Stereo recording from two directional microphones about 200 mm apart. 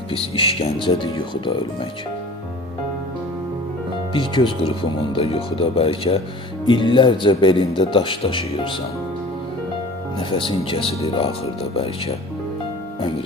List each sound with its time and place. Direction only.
0.1 s speech: 30° left (ahead or behind)
4.1 s speech: 25° left (ahead or behind)
10.3 s speech: 25° left (ahead or behind)